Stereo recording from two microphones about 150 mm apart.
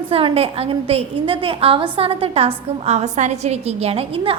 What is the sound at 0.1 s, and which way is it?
A woman's voice, 40° right (ahead or behind).